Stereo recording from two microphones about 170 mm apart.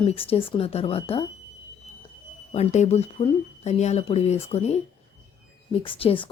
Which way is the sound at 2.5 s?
40° left (ahead or behind).